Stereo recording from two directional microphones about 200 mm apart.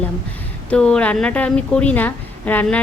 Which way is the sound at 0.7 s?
5° left (ahead or behind).